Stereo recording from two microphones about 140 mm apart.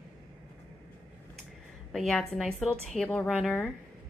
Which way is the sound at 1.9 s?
Centre (ahead or behind).